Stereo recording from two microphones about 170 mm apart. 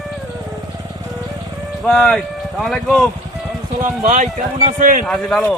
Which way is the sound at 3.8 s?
50° right (ahead or behind).